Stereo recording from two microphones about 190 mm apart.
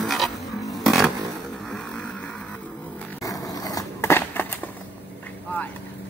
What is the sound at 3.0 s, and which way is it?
Skateboard, 15° left (ahead or behind).